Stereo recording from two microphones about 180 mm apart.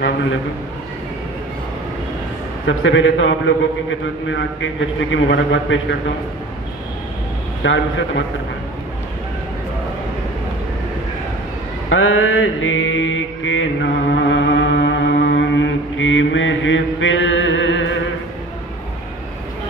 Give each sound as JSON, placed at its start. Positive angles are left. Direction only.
{"t": 0.0, "sound": "a man's voice", "side_deg": 90}
{"t": 2.6, "sound": "a man's voice", "side_deg": 90}
{"t": 7.6, "sound": "a man's voice", "side_deg": 90}
{"t": 11.9, "sound": "mantra", "side_deg": 90}